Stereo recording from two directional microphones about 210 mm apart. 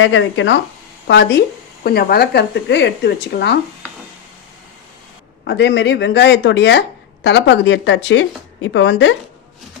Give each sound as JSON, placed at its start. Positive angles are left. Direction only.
{"t": 0.0, "sound": "a woman's voice", "side_deg": 65}
{"t": 5.5, "sound": "a woman's voice", "side_deg": 55}